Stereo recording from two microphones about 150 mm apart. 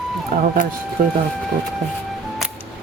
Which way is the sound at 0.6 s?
60° left (ahead or behind).